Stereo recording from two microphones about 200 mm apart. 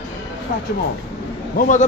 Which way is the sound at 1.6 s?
40° left (ahead or behind).